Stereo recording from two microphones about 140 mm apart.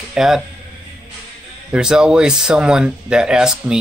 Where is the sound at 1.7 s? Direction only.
5° right (ahead or behind).